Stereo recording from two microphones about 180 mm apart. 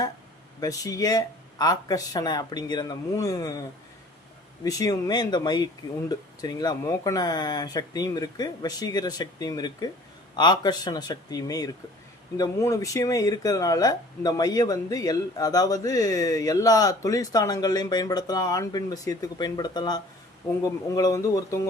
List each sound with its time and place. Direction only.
0.6 s speech: 20° left (ahead or behind)